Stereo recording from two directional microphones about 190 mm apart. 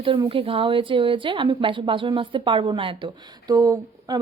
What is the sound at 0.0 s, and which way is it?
Speech, 25° right (ahead or behind).